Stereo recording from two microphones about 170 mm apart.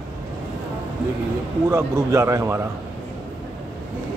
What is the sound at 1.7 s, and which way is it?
Speech, 15° right (ahead or behind).